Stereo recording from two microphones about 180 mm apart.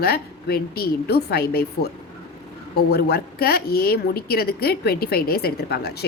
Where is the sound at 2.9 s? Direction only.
60° left (ahead or behind).